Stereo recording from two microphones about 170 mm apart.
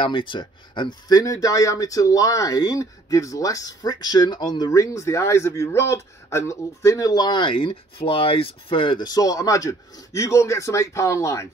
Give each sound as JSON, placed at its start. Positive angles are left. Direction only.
{"t": 0.0, "sound": "speech", "side_deg": 30}